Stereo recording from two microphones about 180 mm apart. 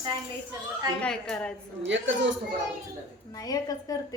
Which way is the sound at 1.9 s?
90° right.